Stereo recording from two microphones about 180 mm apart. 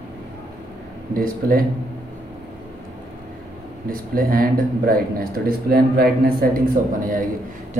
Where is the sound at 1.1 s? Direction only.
55° right (ahead or behind).